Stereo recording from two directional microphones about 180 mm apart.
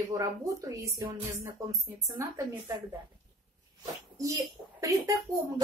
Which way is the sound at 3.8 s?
20° right (ahead or behind).